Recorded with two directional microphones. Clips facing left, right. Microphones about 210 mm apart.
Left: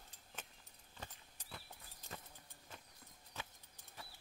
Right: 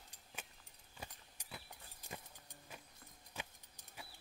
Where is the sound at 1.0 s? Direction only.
10° right (ahead or behind).